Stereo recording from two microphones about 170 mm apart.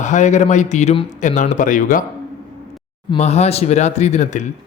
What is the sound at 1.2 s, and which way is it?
Speech, 45° left (ahead or behind).